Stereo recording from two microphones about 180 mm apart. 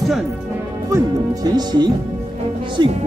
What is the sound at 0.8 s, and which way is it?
Speech, 20° right (ahead or behind).